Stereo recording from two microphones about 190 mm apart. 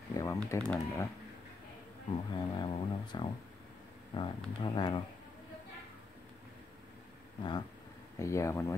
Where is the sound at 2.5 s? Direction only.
25° left (ahead or behind).